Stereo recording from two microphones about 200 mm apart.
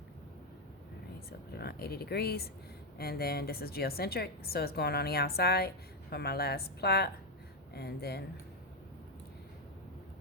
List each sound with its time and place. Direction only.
1.5 s a woman's voice: 55° left (ahead or behind)